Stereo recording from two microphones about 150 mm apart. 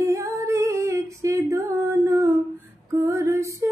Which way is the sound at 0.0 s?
20° right (ahead or behind).